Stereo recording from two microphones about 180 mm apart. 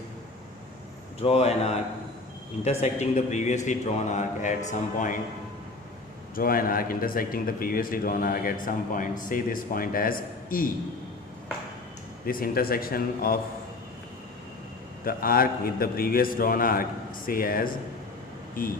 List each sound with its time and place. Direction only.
1.2 s a man's voice: 35° left (ahead or behind)
6.3 s a man's voice: 55° left (ahead or behind)
12.2 s a man's voice: 55° left (ahead or behind)
15.0 s a man's voice: 55° left (ahead or behind)